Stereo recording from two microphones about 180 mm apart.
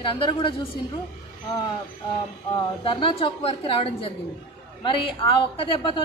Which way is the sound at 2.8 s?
30° left (ahead or behind).